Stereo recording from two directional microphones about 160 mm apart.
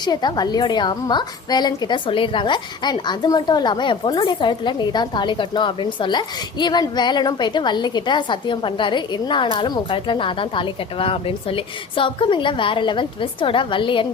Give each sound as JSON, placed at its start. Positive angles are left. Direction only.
{"t": 0.0, "sound": "a woman's voice", "side_deg": 25}